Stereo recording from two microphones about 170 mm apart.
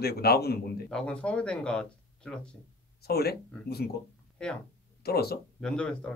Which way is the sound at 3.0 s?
70° left (ahead or behind).